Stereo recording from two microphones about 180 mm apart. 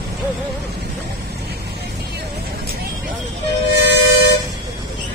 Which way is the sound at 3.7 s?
70° left (ahead or behind).